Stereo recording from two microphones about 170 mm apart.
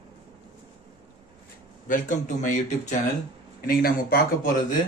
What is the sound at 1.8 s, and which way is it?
A man's voice, 50° left (ahead or behind).